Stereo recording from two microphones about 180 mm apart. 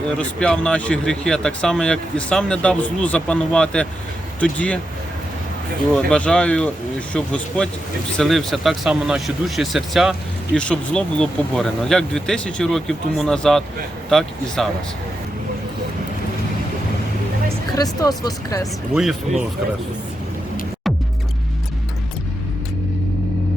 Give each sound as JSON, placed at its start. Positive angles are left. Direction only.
{"t": 0.2, "sound": "speech", "side_deg": 5}
{"t": 5.9, "sound": "speech", "side_deg": 5}
{"t": 17.7, "sound": "speech", "side_deg": 20}
{"t": 18.9, "sound": "speech", "side_deg": 0}